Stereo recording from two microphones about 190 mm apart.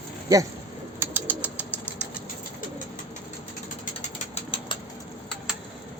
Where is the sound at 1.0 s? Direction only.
10° right (ahead or behind).